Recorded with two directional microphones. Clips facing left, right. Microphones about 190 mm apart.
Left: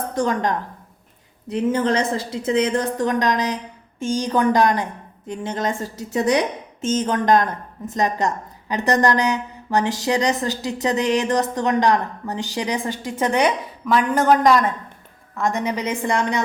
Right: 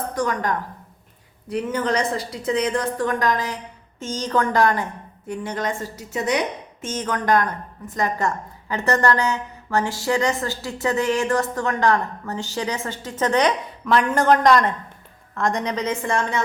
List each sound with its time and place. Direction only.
0.1 s a woman's voice: 25° left (ahead or behind)